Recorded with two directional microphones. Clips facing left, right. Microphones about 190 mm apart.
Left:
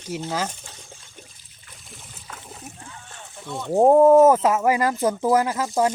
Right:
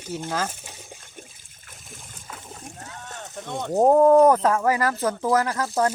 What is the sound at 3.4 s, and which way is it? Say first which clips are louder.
Speech: left 2 dB; 45° right (ahead or behind).